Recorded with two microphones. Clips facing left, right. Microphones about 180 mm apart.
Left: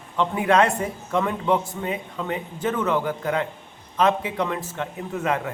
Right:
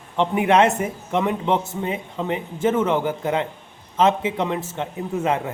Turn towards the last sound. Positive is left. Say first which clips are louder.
# right 3 dB
turn(degrees=-25)  # may be behind; listen again after turning